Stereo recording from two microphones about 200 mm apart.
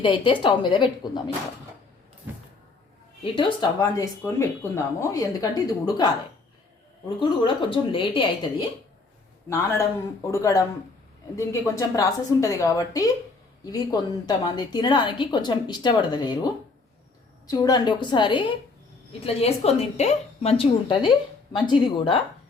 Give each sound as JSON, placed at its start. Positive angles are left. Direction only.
{"t": 0.0, "sound": "a woman's voice", "side_deg": 25}
{"t": 3.3, "sound": "speech", "side_deg": 20}
{"t": 7.2, "sound": "a woman's voice", "side_deg": 25}
{"t": 9.5, "sound": "a woman's voice", "side_deg": 10}
{"t": 17.5, "sound": "a woman's voice", "side_deg": 20}